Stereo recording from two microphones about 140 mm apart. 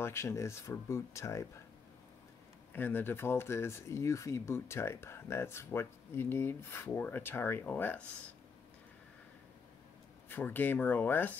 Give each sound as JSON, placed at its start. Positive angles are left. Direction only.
{"t": 0.0, "sound": "speech", "side_deg": 20}
{"t": 2.7, "sound": "speech", "side_deg": 15}
{"t": 10.3, "sound": "speech", "side_deg": 15}